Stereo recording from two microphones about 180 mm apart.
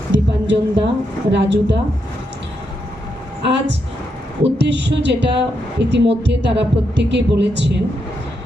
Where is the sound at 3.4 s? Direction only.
75° right (ahead or behind).